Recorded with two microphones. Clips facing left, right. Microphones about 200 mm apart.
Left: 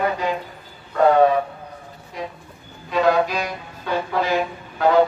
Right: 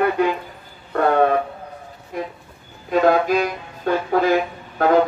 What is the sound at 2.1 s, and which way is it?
Music, 50° right (ahead or behind).